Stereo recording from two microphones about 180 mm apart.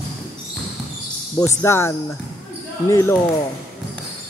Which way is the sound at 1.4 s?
15° left (ahead or behind).